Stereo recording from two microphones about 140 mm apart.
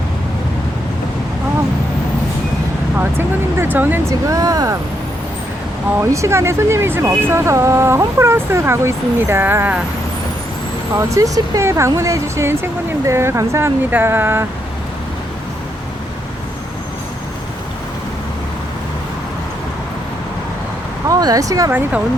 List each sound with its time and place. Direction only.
3.0 s speech: 15° right (ahead or behind)
6.0 s speech: 20° right (ahead or behind)
10.9 s speech: 25° right (ahead or behind)
21.1 s speech: 25° right (ahead or behind)
21.7 s speech: 15° right (ahead or behind)